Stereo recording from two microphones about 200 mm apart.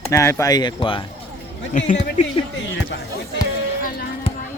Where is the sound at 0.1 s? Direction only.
15° left (ahead or behind).